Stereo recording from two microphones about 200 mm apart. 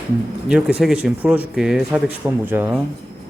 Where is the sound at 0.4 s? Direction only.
5° right (ahead or behind).